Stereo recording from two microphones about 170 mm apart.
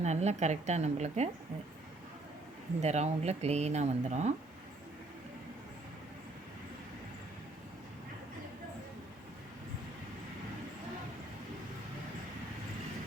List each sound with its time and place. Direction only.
0.0 s speech: 40° right (ahead or behind)
2.8 s speech: 40° right (ahead or behind)